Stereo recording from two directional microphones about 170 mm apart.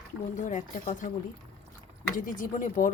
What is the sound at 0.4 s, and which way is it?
Speech, 50° left (ahead or behind).